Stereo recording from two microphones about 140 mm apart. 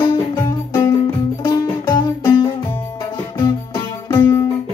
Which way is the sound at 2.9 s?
35° left (ahead or behind).